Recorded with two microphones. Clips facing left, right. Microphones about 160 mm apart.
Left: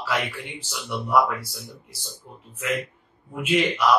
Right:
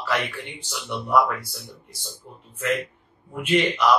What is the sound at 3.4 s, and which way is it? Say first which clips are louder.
Speech: right 1 dB; centre (ahead or behind).